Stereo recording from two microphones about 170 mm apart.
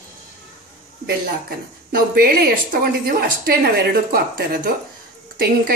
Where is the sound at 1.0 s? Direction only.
65° right (ahead or behind).